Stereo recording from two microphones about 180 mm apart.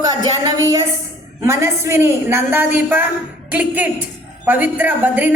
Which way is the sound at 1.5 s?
15° right (ahead or behind).